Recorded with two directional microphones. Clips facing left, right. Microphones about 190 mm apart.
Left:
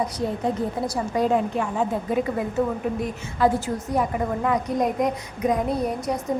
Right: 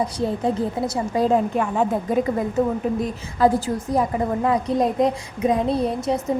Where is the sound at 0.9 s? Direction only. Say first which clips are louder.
Right 2 dB; 30° right (ahead or behind).